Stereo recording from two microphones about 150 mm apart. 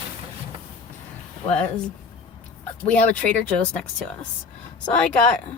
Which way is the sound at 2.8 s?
10° left (ahead or behind).